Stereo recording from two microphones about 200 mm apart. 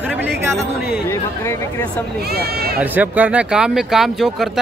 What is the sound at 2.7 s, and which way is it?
Speech, 10° right (ahead or behind).